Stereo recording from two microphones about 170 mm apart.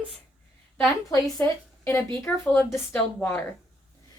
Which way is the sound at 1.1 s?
15° left (ahead or behind).